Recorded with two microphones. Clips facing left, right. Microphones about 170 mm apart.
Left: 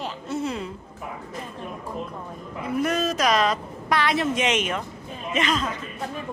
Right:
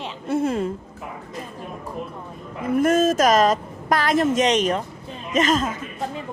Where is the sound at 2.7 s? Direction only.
45° right (ahead or behind).